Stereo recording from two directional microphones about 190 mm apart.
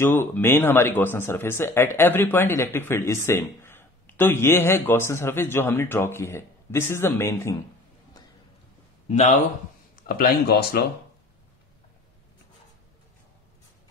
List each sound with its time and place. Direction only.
0.0 s speech: 10° left (ahead or behind)
9.0 s speech: 35° left (ahead or behind)
9.9 s speech: 50° left (ahead or behind)